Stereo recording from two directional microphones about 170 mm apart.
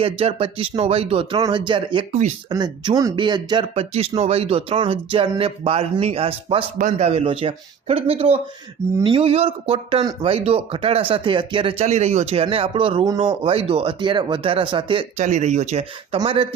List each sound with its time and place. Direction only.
0.0 s a man's voice: 35° right (ahead or behind)
6.7 s a man's voice: 45° right (ahead or behind)
15.2 s speech: 45° right (ahead or behind)
16.1 s speech: 30° right (ahead or behind)